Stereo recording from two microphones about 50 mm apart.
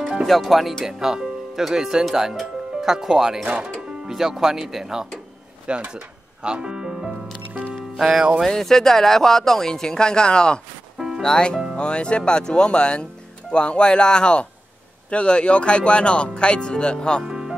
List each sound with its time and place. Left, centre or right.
0.0 s music: centre
0.3 s speech: centre
3.4 s speech: right
4.1 s speech: centre
5.7 s music: centre
8.5 s speech: centre
11.0 s music: centre
11.2 s speech: centre
17.2 s music: centre